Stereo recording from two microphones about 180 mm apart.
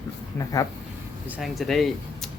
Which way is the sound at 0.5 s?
20° left (ahead or behind).